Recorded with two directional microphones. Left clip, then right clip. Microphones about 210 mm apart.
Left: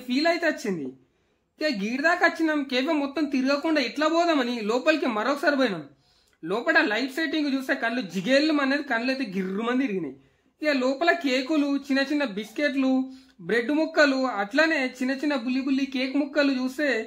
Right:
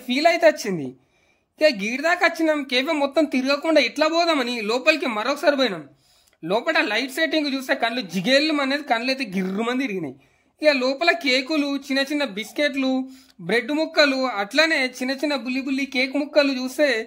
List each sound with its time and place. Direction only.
0.1 s a woman's voice: 35° right (ahead or behind)